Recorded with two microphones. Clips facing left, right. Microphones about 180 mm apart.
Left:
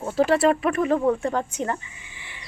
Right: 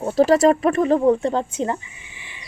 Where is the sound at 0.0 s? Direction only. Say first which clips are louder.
Right 4 dB; 40° right (ahead or behind).